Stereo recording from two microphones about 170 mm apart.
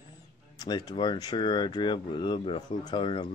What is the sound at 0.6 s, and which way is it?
Speech, 25° left (ahead or behind).